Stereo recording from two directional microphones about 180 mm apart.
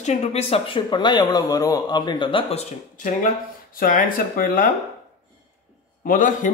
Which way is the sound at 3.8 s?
50° left (ahead or behind).